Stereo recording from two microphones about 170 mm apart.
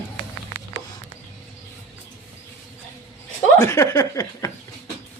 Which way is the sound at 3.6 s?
15° left (ahead or behind).